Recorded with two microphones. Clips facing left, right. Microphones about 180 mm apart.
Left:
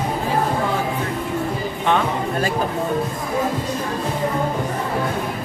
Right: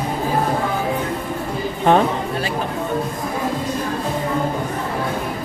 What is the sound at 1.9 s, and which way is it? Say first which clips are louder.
Speech: right 5 dB; 40° right (ahead or behind).